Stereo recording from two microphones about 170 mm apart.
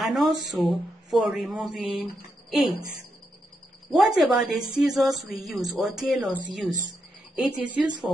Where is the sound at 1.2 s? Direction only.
5° right (ahead or behind).